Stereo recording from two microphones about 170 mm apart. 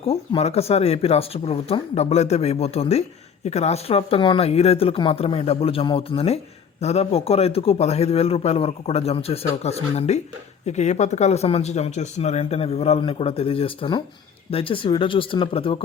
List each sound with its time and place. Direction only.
0.0 s a man's voice: 35° left (ahead or behind)